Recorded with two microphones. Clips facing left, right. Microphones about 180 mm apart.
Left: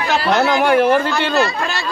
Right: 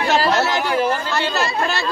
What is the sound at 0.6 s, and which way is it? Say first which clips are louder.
Speech: left 7 dB; 65° left (ahead or behind).